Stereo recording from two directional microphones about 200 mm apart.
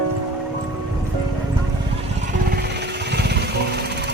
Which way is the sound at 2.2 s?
50° right (ahead or behind).